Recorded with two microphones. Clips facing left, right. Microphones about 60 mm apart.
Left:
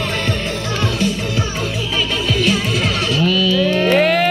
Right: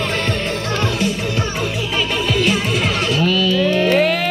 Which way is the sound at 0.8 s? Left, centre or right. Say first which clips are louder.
Left 2 dB; right.